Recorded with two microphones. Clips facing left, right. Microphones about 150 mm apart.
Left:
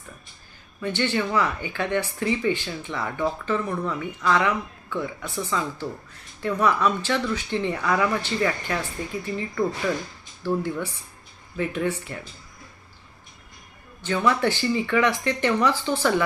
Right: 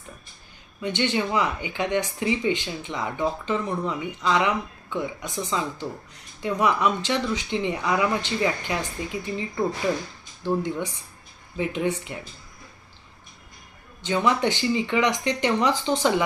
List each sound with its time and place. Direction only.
0.8 s speech: 20° right (ahead or behind)
14.0 s speech: 15° right (ahead or behind)